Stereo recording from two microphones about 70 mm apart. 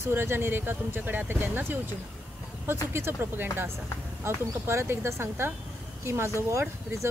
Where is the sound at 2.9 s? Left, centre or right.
Right.